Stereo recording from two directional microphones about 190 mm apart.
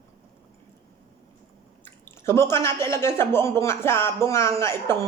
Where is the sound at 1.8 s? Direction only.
15° left (ahead or behind).